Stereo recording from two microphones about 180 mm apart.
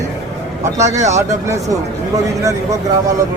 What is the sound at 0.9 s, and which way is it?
Speech, 15° right (ahead or behind).